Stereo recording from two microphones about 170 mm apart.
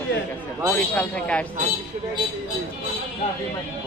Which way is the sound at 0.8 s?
10° left (ahead or behind).